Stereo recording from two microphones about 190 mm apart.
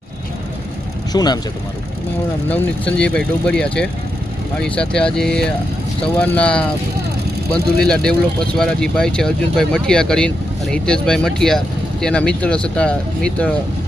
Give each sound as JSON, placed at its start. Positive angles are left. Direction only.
{"t": 1.1, "sound": "speech", "side_deg": 20}
{"t": 2.5, "sound": "speech", "side_deg": 5}